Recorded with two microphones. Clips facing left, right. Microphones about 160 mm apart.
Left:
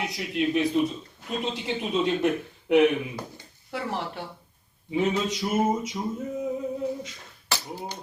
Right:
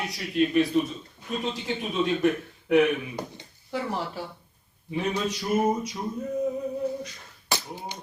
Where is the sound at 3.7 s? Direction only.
Centre (ahead or behind).